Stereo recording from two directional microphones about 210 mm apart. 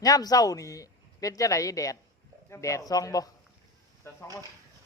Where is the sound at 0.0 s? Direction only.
15° left (ahead or behind).